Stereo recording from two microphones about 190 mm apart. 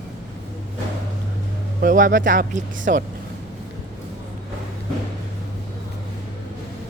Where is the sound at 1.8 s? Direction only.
45° right (ahead or behind).